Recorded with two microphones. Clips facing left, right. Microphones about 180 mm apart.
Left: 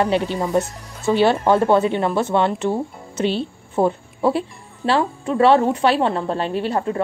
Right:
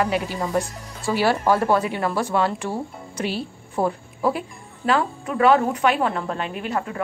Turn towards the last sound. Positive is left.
turn(degrees=30)  # may be behind; listen again after turning